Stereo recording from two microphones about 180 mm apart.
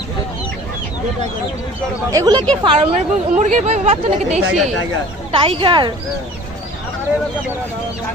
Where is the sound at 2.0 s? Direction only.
20° right (ahead or behind).